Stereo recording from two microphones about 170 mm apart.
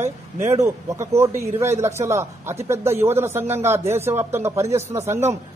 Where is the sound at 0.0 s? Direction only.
40° right (ahead or behind).